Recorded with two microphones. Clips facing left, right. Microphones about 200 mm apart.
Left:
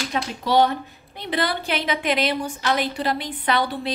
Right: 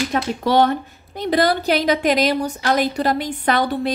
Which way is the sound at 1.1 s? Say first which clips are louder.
Right 7 dB; 40° right (ahead or behind).